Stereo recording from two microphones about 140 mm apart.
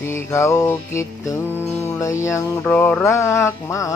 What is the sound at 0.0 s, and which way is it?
Music, 20° left (ahead or behind).